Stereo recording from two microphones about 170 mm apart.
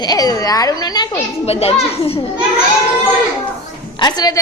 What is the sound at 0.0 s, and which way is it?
A woman's voice, 20° left (ahead or behind).